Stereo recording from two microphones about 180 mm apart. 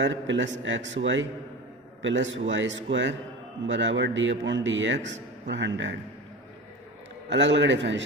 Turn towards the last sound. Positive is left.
turn(degrees=-80)